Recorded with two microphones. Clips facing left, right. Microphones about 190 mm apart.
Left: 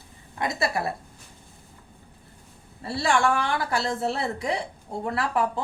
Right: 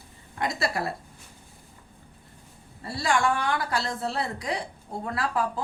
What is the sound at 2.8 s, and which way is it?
A woman's voice, 25° left (ahead or behind).